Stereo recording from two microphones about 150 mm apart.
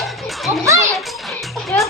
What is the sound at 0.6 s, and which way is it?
Speech, 20° right (ahead or behind).